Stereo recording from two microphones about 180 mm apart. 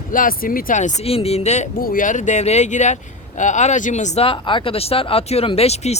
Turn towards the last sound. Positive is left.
turn(degrees=35)  # may be behind; listen again after turning